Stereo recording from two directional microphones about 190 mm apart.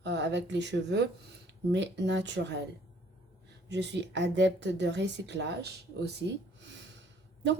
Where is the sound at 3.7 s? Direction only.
65° right (ahead or behind).